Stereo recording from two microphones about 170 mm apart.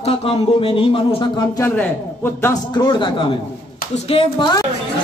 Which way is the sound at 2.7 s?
25° left (ahead or behind).